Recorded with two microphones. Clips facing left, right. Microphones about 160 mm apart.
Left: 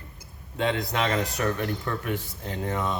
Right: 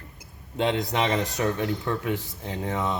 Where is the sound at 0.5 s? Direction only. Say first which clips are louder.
Right 2 dB; 20° right (ahead or behind).